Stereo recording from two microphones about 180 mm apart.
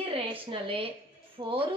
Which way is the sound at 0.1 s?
30° right (ahead or behind).